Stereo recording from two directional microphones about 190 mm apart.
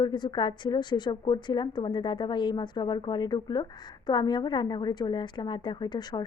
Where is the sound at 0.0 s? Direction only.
25° left (ahead or behind).